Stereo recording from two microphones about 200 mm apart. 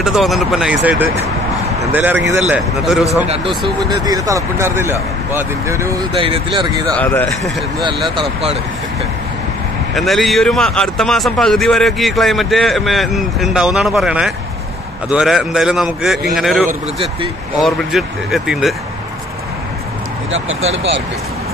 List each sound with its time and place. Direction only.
0.0 s a man's voice: centre (ahead or behind)
4.0 s speech: 15° right (ahead or behind)
7.0 s speech: 10° left (ahead or behind)
8.2 s speech: 30° right (ahead or behind)
9.9 s a man's voice: centre (ahead or behind)
20.2 s speech: 75° right (ahead or behind)